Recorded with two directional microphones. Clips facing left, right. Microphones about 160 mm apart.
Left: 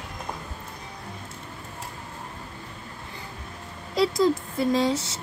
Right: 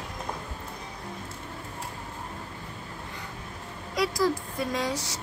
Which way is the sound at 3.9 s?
25° left (ahead or behind).